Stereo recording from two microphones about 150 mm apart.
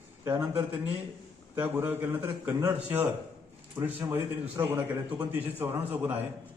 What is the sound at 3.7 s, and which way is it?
A man's voice, 15° right (ahead or behind).